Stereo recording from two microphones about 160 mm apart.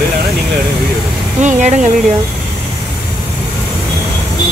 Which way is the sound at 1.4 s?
50° right (ahead or behind).